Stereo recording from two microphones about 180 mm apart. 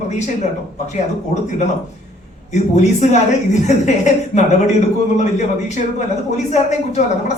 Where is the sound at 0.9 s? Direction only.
40° left (ahead or behind).